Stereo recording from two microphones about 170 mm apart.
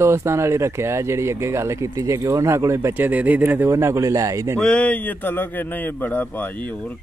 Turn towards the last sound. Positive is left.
turn(degrees=10)  # may be behind; listen again after turning